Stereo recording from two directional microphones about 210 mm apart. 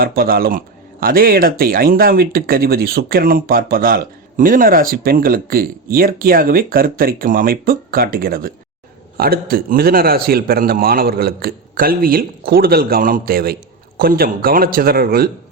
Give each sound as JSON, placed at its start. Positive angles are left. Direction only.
{"t": 0.0, "sound": "speech", "side_deg": -45}